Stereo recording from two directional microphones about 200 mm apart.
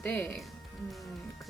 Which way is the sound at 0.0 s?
10° left (ahead or behind).